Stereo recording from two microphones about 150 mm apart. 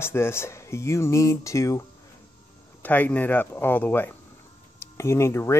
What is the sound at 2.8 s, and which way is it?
Speech, 10° left (ahead or behind).